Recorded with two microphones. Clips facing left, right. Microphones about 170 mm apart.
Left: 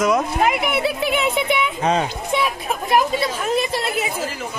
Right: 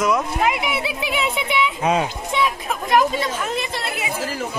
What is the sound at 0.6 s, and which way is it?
Speech, 55° left (ahead or behind).